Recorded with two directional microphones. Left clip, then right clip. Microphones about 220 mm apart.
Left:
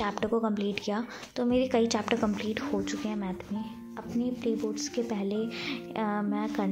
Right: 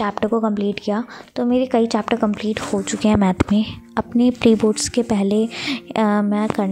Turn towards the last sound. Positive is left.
turn(degrees=-45)  # may be behind; listen again after turning